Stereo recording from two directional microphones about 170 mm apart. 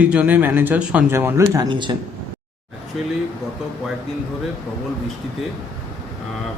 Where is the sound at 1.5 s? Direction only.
25° right (ahead or behind).